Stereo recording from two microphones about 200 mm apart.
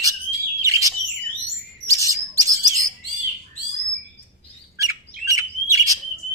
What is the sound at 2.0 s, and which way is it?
Bird, 15° right (ahead or behind).